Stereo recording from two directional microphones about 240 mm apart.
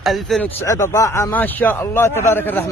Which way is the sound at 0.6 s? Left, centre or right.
Centre.